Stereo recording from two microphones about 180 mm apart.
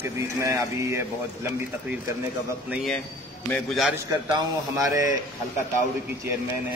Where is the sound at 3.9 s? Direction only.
20° right (ahead or behind).